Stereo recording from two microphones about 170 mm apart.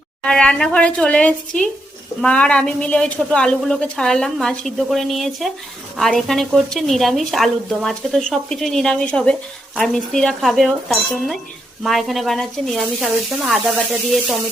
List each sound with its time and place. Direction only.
0.2 s a woman's voice: 5° left (ahead or behind)